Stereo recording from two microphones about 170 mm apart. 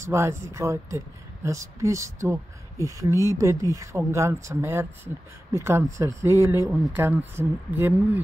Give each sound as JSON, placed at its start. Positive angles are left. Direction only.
{"t": 0.0, "sound": "speech", "side_deg": -15}